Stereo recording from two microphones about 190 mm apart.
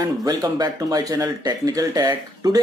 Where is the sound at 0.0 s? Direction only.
20° right (ahead or behind).